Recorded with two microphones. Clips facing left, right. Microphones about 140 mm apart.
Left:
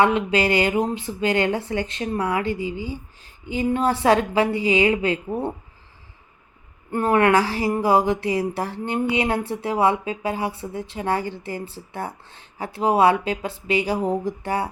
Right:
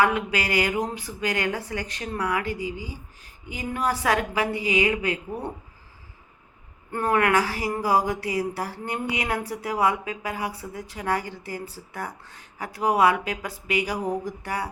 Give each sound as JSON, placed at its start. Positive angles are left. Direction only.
{"t": 0.0, "sound": "speech", "side_deg": 25}
{"t": 6.9, "sound": "speech", "side_deg": 25}